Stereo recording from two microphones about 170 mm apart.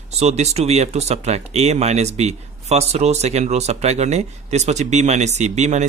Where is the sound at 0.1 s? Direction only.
40° right (ahead or behind).